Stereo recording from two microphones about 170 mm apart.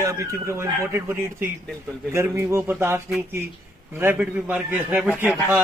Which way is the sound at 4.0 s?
10° right (ahead or behind).